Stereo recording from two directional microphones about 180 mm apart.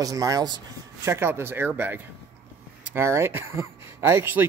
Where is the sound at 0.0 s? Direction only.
20° right (ahead or behind).